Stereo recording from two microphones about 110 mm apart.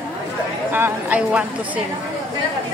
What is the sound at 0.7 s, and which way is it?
Speech, 15° right (ahead or behind).